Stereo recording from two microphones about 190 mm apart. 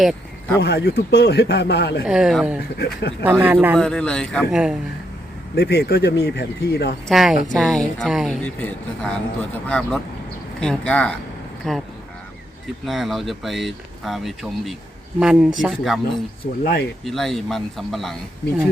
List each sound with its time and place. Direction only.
0.0 s a sound: centre (ahead or behind)
0.6 s speech: 55° left (ahead or behind)
2.0 s speech: 5° right (ahead or behind)
2.7 s speech: 60° left (ahead or behind)
3.4 s speech: 10° right (ahead or behind)
3.8 s speech: 5° left (ahead or behind)
5.5 s speech: 55° left (ahead or behind)
7.1 s speech: centre (ahead or behind)